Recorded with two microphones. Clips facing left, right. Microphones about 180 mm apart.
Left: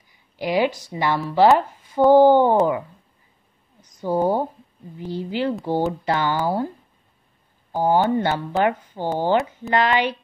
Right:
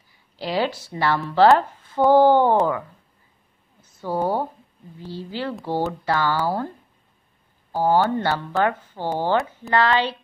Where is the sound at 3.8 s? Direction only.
15° left (ahead or behind).